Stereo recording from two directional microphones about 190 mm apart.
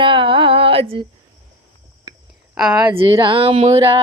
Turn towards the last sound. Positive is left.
turn(degrees=-30)  # may be behind; listen again after turning